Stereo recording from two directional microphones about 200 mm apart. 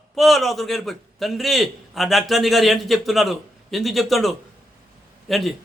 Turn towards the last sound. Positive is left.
turn(degrees=0)  # may be behind; listen again after turning